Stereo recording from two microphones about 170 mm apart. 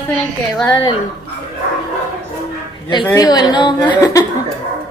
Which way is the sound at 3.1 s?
20° left (ahead or behind).